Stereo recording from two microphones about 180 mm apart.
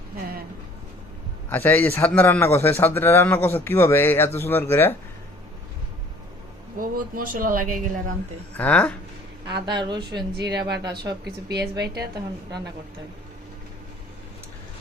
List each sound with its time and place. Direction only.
1.5 s a man's voice: 10° left (ahead or behind)
6.7 s a woman's voice: 50° right (ahead or behind)
8.5 s a man's voice: 10° left (ahead or behind)
9.6 s speech: 25° right (ahead or behind)